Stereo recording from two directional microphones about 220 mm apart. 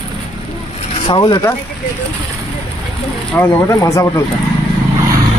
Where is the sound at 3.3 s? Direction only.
10° left (ahead or behind).